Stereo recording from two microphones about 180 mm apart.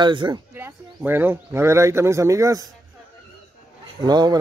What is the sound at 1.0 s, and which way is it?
A man's voice, 10° right (ahead or behind).